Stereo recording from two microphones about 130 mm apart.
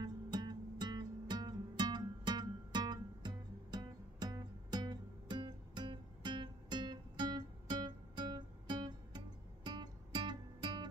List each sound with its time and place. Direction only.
0.0 s music: 35° right (ahead or behind)